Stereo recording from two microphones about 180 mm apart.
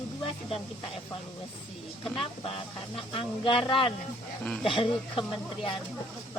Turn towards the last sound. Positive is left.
turn(degrees=30)  # may be behind; listen again after turning